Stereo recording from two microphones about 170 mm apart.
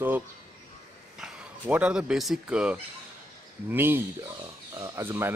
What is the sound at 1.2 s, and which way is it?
Speech, 5° right (ahead or behind).